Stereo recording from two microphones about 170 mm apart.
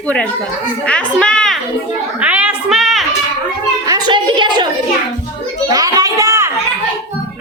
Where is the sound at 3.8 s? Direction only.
25° right (ahead or behind).